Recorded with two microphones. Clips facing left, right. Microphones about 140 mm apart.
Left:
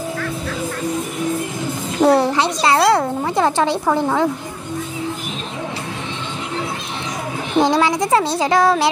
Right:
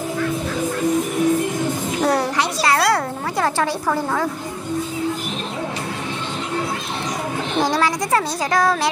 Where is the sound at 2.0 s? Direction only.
25° left (ahead or behind).